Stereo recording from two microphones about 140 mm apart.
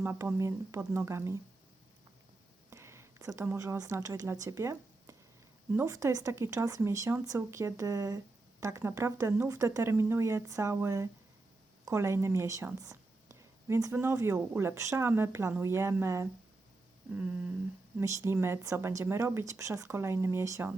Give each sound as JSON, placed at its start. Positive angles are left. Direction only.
{"t": 0.0, "sound": "a woman's voice", "side_deg": -15}
{"t": 2.6, "sound": "a sound", "side_deg": -20}
{"t": 3.4, "sound": "a woman's voice", "side_deg": -20}
{"t": 17.1, "sound": "humming", "side_deg": -10}
{"t": 18.0, "sound": "a woman's voice", "side_deg": -20}